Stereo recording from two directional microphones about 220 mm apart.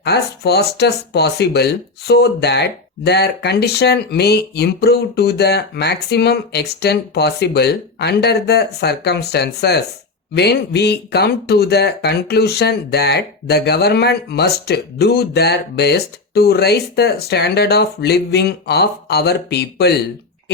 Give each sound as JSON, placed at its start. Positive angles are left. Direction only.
{"t": 0.0, "sound": "speech", "side_deg": 45}